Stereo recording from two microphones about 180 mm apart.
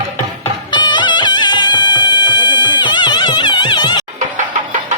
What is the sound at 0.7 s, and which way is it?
Music, 25° left (ahead or behind).